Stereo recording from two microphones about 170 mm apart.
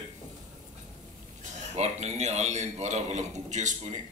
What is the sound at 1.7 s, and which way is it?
A man's voice, 40° right (ahead or behind).